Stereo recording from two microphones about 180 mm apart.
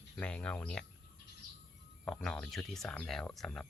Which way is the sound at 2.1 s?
5° left (ahead or behind).